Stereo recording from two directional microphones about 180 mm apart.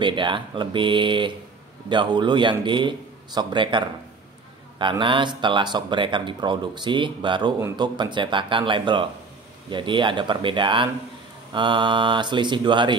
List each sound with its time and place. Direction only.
0.0 s speech: 25° right (ahead or behind)